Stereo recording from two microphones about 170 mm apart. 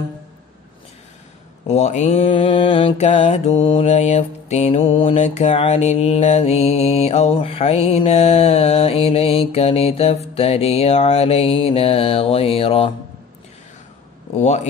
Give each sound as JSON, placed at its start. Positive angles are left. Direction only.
{"t": 1.7, "sound": "mantra", "side_deg": 40}
{"t": 14.4, "sound": "mantra", "side_deg": 40}